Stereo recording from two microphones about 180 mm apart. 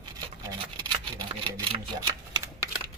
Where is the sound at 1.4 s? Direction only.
25° right (ahead or behind).